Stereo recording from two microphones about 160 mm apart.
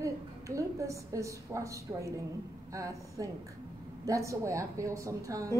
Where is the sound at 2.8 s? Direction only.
20° right (ahead or behind).